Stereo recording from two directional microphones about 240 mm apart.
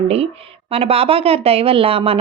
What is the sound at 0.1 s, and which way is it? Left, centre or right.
Speech, right.